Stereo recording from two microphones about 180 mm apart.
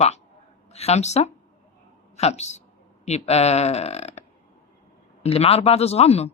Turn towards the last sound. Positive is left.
turn(degrees=35)  # may be behind; listen again after turning